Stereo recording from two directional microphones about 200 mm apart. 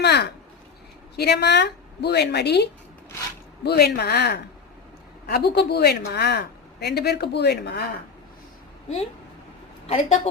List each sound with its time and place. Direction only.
0.0 s a woman's voice: 55° left (ahead or behind)
9.8 s a woman's voice: 30° left (ahead or behind)